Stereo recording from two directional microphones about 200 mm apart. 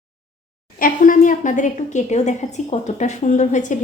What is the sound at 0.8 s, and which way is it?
A woman's voice, 45° left (ahead or behind).